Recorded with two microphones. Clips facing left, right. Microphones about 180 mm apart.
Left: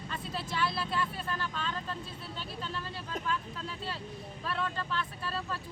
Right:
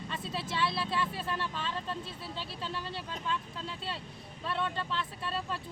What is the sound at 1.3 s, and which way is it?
Speech, 25° right (ahead or behind).